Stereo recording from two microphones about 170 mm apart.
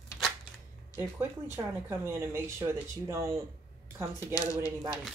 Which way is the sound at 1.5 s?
15° right (ahead or behind).